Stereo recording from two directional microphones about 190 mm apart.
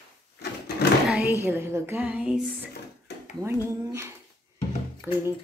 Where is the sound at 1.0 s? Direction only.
5° right (ahead or behind).